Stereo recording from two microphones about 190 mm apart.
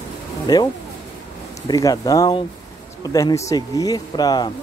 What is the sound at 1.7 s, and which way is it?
Speech, 20° left (ahead or behind).